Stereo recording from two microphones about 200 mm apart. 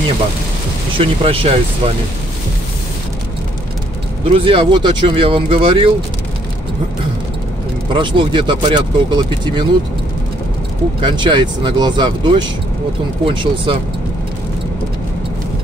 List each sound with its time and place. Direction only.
0.9 s speech: 25° right (ahead or behind)
4.3 s speech: 25° right (ahead or behind)
7.9 s speech: 25° right (ahead or behind)
11.0 s speech: 25° right (ahead or behind)